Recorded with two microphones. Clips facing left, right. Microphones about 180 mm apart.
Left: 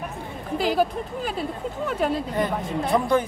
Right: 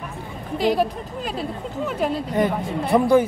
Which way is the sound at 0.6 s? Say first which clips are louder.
Right 2 dB; centre (ahead or behind).